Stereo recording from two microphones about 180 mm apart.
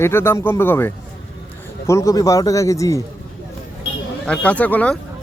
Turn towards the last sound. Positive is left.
turn(degrees=10)  # may be behind; listen again after turning